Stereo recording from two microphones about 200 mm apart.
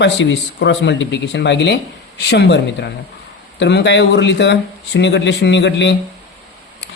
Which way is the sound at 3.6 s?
60° left (ahead or behind).